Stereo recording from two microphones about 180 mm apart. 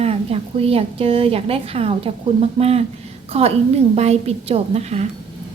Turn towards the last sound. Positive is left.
turn(degrees=-35)  # may be behind; listen again after turning